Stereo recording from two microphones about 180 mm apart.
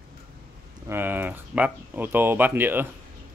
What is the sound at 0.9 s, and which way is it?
Speech, 10° right (ahead or behind).